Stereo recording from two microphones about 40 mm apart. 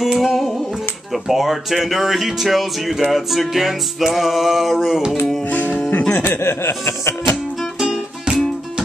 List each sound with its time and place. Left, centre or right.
0.2 s music: centre
1.1 s speech: centre
5.5 s music: left
6.2 s a sound: left
7.8 s music: centre